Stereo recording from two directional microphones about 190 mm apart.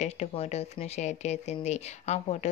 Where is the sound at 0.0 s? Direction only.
35° left (ahead or behind).